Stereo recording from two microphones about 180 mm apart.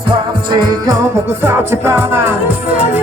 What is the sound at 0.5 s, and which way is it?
Music, 20° right (ahead or behind).